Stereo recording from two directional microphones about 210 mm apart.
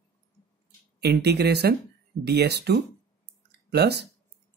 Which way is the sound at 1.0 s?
50° right (ahead or behind).